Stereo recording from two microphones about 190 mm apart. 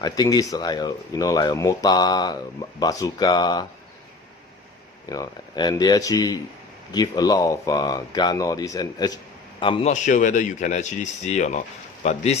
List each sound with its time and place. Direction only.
0.0 s speech: 20° left (ahead or behind)
5.0 s speech: 20° left (ahead or behind)
9.9 s speech: 40° left (ahead or behind)